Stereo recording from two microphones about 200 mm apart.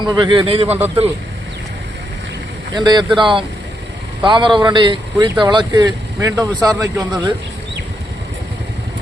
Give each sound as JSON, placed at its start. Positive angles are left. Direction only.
{"t": 0.0, "sound": "speech", "side_deg": -25}
{"t": 2.7, "sound": "speech", "side_deg": -20}